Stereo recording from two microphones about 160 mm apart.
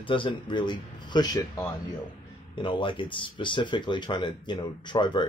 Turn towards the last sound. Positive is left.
turn(degrees=30)  # may be behind; listen again after turning